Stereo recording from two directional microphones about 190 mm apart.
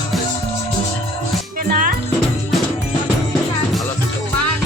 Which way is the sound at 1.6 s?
50° right (ahead or behind).